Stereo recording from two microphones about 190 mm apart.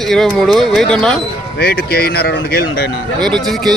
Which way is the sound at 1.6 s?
55° left (ahead or behind).